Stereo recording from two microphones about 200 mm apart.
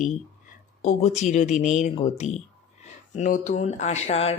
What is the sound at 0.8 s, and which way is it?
Speech, 35° left (ahead or behind).